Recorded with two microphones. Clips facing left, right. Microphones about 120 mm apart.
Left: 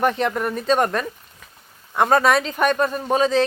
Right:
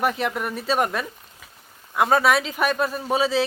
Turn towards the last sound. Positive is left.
turn(degrees=-5)  # may be behind; listen again after turning